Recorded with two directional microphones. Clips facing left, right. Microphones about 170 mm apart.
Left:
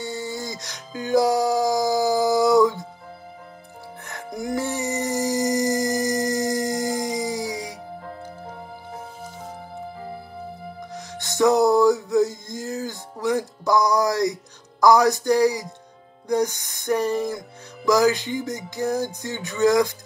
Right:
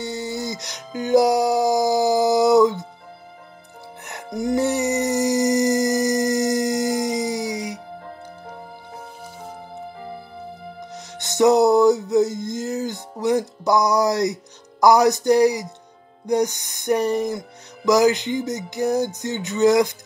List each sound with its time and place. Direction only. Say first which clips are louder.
0.0 s music: right 3 dB; 20° right (ahead or behind)
4.0 s music: right 5 dB; 20° right (ahead or behind)
10.9 s music: even; 20° right (ahead or behind)